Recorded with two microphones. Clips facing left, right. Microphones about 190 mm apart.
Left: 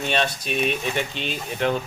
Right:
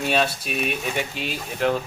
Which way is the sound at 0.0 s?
5° right (ahead or behind).